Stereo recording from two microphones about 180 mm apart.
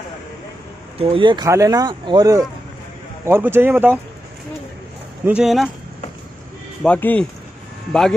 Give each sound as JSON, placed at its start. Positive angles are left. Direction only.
{"t": 0.9, "sound": "speech", "side_deg": -30}
{"t": 5.2, "sound": "speech", "side_deg": -5}
{"t": 6.8, "sound": "speech", "side_deg": 10}